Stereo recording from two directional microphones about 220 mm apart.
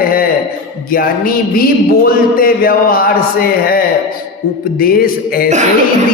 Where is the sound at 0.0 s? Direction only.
40° left (ahead or behind).